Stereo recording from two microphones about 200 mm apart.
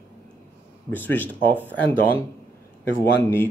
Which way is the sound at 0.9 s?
10° left (ahead or behind).